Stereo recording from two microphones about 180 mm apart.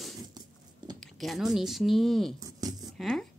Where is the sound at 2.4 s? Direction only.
20° right (ahead or behind).